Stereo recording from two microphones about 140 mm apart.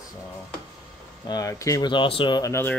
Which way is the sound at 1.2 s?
25° left (ahead or behind).